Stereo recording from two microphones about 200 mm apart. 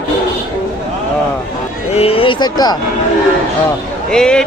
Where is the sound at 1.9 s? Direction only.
30° left (ahead or behind).